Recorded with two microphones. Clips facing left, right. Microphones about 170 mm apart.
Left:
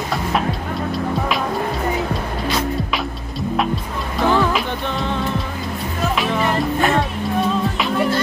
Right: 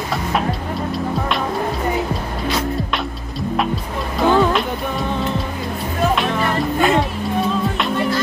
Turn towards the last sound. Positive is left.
turn(degrees=0)  # may be behind; listen again after turning